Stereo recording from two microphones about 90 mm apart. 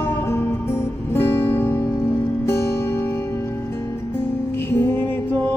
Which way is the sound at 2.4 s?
30° left (ahead or behind).